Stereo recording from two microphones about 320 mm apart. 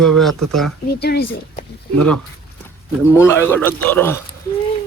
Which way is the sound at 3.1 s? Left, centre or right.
Centre.